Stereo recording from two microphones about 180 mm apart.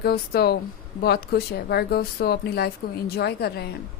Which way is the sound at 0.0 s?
60° left (ahead or behind).